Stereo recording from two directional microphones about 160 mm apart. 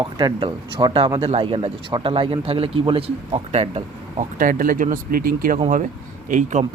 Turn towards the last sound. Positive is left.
turn(degrees=-50)  # may be behind; listen again after turning